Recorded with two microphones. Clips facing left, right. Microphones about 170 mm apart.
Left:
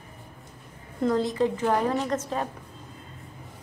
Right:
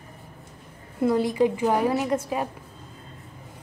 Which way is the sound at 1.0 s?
10° right (ahead or behind).